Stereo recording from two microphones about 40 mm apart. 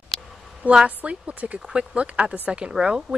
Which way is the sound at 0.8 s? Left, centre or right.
Right.